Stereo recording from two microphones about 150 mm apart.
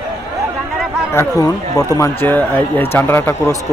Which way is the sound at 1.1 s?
25° left (ahead or behind).